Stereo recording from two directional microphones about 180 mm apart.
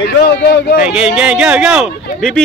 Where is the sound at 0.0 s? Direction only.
60° left (ahead or behind).